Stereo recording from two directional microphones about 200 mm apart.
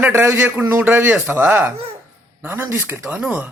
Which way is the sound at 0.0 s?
10° right (ahead or behind).